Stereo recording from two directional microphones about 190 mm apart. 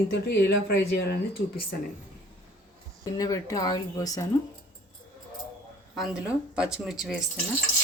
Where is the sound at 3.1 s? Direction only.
15° left (ahead or behind).